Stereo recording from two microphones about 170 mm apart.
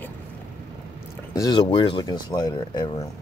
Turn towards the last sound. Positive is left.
turn(degrees=30)  # may be behind; listen again after turning